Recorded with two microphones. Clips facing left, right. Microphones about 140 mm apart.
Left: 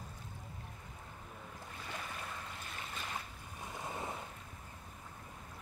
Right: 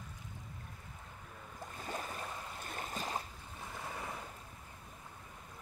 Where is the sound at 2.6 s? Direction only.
45° right (ahead or behind).